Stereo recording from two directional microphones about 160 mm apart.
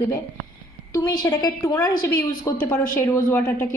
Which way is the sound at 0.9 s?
25° left (ahead or behind).